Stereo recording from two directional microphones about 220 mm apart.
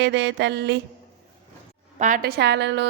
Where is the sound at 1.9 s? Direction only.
35° right (ahead or behind); by 2.9 s 50° right (ahead or behind).